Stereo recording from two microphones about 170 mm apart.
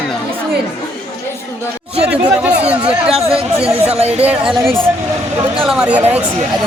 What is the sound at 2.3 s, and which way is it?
Speech, 5° right (ahead or behind).